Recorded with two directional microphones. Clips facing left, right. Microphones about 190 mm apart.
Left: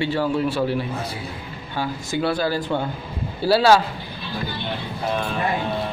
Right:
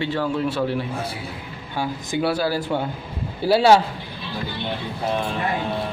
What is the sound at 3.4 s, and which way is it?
Speech, 20° right (ahead or behind).